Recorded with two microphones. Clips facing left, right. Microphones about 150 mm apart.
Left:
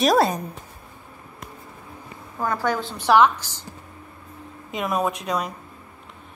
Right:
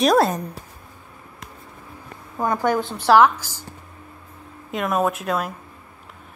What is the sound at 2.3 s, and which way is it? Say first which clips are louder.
A woman's voice: right 3 dB; 15° right (ahead or behind).